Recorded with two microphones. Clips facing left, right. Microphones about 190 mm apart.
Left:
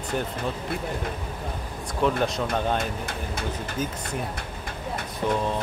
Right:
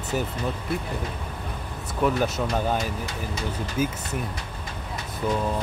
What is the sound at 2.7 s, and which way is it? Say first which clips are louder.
Speech: even; 55° left (ahead or behind).